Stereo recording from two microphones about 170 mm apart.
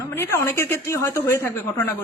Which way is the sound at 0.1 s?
15° left (ahead or behind).